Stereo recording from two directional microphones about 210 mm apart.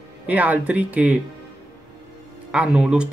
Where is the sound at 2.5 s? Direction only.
5° right (ahead or behind).